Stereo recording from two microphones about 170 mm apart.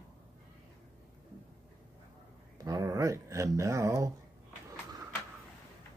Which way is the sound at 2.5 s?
20° right (ahead or behind).